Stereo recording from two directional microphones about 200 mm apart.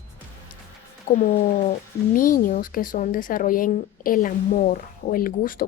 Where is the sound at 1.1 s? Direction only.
45° left (ahead or behind).